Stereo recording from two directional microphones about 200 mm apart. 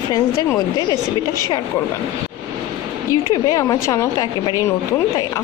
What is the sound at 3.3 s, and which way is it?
Speech, 15° left (ahead or behind).